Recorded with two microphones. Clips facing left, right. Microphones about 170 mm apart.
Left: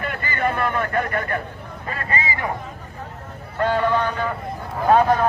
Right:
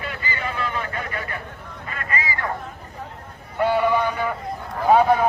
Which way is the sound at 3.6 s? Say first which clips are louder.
Even; 10° right (ahead or behind).